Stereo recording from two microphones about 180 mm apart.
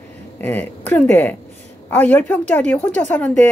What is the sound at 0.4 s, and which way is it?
Speech, 10° left (ahead or behind).